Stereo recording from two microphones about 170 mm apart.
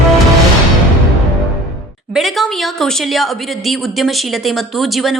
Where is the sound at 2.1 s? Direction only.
Centre (ahead or behind).